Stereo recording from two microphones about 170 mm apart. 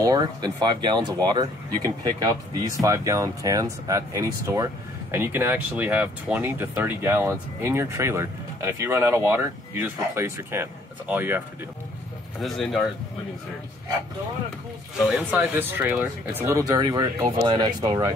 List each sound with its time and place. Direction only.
0.0 s speech: 25° right (ahead or behind)
12.4 s speech: centre (ahead or behind)
15.0 s speech: 10° right (ahead or behind)